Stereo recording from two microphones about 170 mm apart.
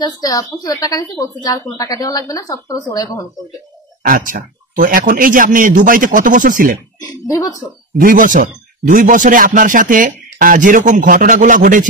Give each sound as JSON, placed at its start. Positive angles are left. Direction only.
{"t": 0.0, "sound": "a woman's voice", "side_deg": 25}
{"t": 4.0, "sound": "speech", "side_deg": -55}
{"t": 7.0, "sound": "a woman's voice", "side_deg": 20}
{"t": 8.0, "sound": "speech", "side_deg": -50}